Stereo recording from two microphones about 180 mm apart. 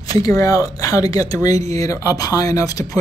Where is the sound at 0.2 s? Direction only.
20° left (ahead or behind).